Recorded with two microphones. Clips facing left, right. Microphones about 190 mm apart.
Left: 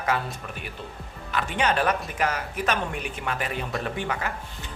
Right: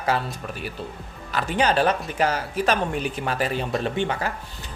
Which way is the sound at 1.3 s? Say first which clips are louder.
Right 3 dB; 35° right (ahead or behind).